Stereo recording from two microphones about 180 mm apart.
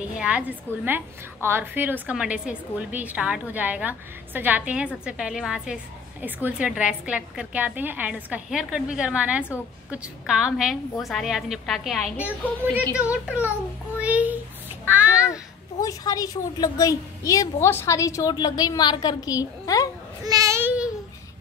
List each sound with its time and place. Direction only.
0.1 s a woman's voice: 5° right (ahead or behind)
13.9 s a sound: 10° right (ahead or behind)
15.8 s a woman's voice: 20° left (ahead or behind)
20.2 s babbling: 20° right (ahead or behind)